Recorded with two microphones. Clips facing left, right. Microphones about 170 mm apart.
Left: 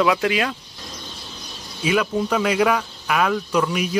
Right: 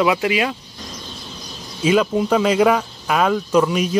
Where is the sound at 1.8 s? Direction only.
25° right (ahead or behind).